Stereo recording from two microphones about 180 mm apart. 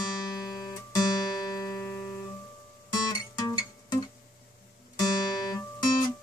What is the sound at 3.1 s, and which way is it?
Music, 20° left (ahead or behind).